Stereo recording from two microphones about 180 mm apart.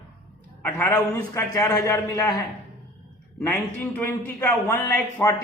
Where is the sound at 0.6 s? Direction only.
10° left (ahead or behind).